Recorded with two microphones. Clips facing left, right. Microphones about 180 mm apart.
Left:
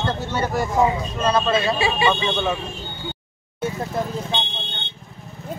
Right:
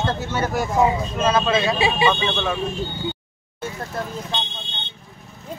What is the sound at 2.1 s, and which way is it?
Speech, 10° left (ahead or behind).